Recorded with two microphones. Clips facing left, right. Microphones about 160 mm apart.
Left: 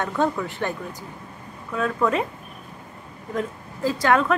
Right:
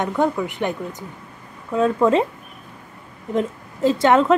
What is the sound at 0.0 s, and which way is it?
A woman's voice, 15° right (ahead or behind).